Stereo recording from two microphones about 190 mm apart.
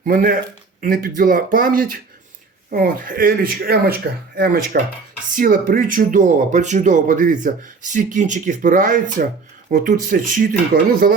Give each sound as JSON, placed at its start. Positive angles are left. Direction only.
{"t": 0.0, "sound": "speech", "side_deg": -45}